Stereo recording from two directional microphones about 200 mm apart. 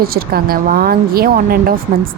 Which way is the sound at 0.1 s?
50° right (ahead or behind).